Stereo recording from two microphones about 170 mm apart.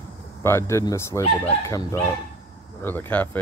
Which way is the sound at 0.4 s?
15° left (ahead or behind).